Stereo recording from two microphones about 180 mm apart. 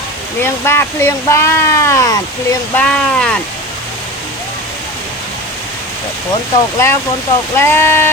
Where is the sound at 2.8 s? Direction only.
5° left (ahead or behind).